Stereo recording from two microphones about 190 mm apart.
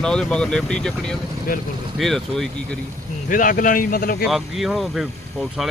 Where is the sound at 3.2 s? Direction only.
45° left (ahead or behind).